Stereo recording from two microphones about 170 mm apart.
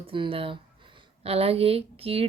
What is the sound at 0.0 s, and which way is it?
Speech, 30° right (ahead or behind).